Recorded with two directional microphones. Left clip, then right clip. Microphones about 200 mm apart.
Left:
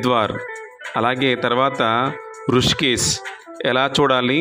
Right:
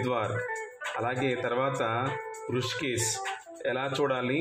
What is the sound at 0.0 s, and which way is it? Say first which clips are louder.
Speech: left 11 dB; 35° left (ahead or behind).